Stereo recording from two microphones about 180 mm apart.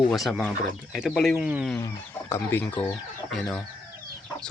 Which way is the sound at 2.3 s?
10° left (ahead or behind).